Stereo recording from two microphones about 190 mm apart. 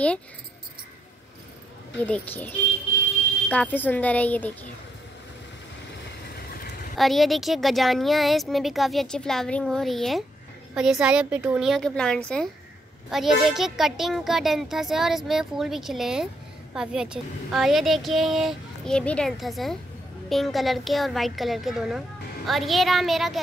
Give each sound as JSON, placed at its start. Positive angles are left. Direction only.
{"t": 2.0, "sound": "speech", "side_deg": 10}
{"t": 6.2, "sound": "vehicle", "side_deg": 55}
{"t": 7.0, "sound": "speech", "side_deg": 0}